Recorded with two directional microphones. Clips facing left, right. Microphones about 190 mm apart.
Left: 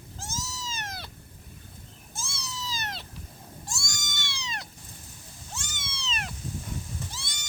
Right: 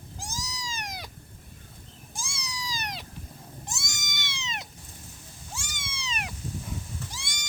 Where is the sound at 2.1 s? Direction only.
15° right (ahead or behind).